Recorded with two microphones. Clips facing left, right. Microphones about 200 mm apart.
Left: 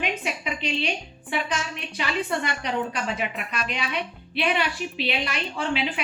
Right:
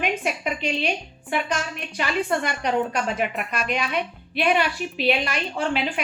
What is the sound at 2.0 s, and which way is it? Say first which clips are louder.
Speech: right 3 dB; 50° right (ahead or behind).